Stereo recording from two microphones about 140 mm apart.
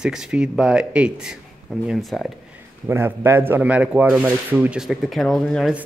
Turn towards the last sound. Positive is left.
turn(degrees=5)  # may be behind; listen again after turning